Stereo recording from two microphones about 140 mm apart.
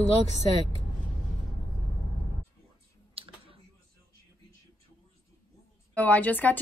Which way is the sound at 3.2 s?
40° right (ahead or behind).